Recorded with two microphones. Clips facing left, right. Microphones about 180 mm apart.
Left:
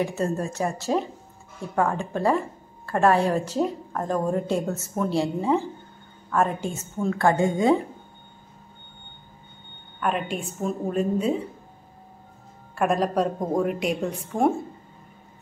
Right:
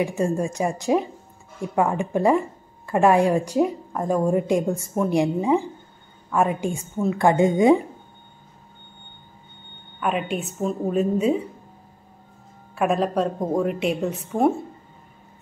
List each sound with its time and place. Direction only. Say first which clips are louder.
0.0 s a woman's voice: right 3 dB; 15° right (ahead or behind)
9.9 s a woman's voice: right 2 dB; 5° right (ahead or behind)
12.7 s a woman's voice: right 1 dB; centre (ahead or behind)